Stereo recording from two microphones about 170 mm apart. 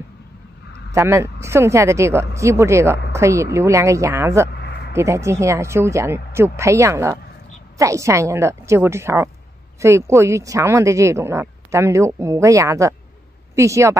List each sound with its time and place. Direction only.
0.7 s speech: 15° right (ahead or behind)
4.5 s a sound: 80° left
4.9 s speech: 15° right (ahead or behind)